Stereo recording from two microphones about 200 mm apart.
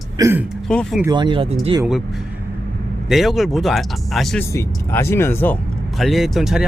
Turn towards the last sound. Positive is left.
turn(degrees=0)  # may be behind; listen again after turning